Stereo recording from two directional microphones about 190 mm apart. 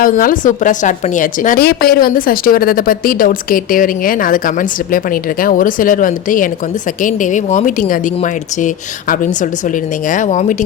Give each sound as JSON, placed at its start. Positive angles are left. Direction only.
{"t": 0.0, "sound": "a woman's voice", "side_deg": 45}